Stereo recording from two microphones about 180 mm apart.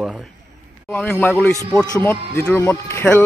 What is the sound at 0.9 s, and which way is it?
A man's voice, 5° left (ahead or behind).